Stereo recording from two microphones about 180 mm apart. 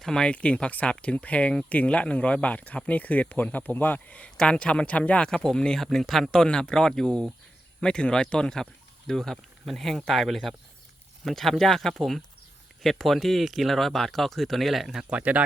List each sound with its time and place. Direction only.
0.0 s speech: 5° left (ahead or behind)